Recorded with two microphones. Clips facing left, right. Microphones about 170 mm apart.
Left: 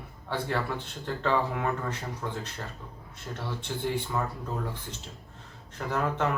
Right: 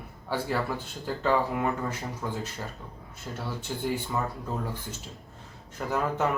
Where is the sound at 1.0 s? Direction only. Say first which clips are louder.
Right 2 dB; 10° right (ahead or behind).